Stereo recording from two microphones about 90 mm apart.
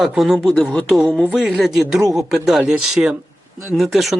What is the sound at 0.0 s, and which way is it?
Speech, 5° right (ahead or behind).